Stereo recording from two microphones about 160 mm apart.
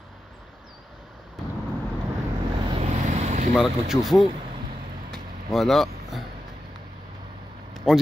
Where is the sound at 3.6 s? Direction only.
Centre (ahead or behind).